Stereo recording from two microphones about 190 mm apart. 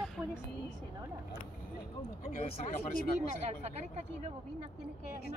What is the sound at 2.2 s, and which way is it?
Speech, 45° left (ahead or behind).